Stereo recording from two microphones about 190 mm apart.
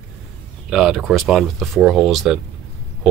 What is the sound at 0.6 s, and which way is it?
Speech, centre (ahead or behind).